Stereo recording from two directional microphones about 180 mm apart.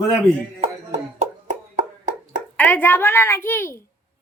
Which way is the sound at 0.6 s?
40° right (ahead or behind).